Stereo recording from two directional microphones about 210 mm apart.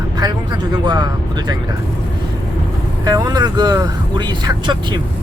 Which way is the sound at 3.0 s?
20° right (ahead or behind).